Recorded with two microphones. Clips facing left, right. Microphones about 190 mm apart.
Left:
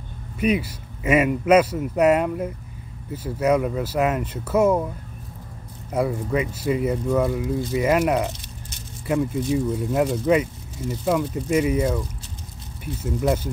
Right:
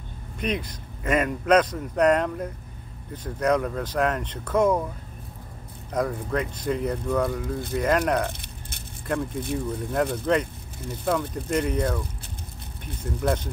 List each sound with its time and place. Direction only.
0.4 s speech: 5° left (ahead or behind)
5.9 s speech: 5° left (ahead or behind)
8.3 s rattle: 55° right (ahead or behind)
9.0 s speech: 5° left (ahead or behind)